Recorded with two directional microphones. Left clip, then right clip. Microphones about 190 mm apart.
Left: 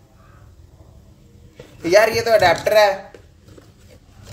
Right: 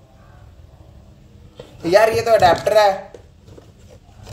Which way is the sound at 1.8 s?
20° left (ahead or behind).